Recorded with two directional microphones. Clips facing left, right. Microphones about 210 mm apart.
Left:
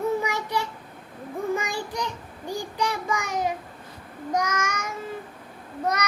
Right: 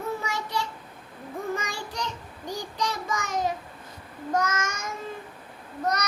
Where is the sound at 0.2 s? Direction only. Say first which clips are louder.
Left 4 dB; 15° left (ahead or behind).